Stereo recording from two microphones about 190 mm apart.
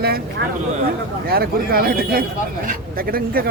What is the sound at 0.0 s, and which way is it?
A man's voice, 55° right (ahead or behind).